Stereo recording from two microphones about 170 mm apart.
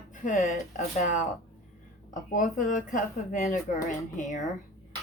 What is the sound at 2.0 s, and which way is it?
Speech, 50° left (ahead or behind).